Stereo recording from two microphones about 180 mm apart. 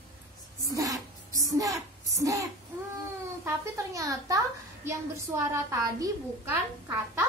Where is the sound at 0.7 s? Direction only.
20° right (ahead or behind).